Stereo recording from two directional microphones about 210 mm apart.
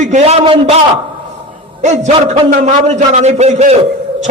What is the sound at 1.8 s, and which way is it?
A man's voice, 35° right (ahead or behind).